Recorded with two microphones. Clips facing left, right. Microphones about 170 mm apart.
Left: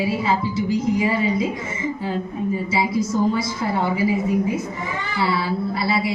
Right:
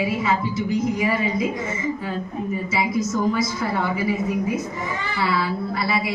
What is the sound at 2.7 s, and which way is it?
A woman's voice, 30° left (ahead or behind).